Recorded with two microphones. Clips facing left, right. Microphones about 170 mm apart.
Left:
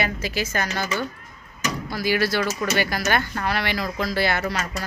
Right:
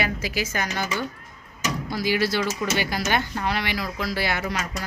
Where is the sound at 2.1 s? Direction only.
20° right (ahead or behind).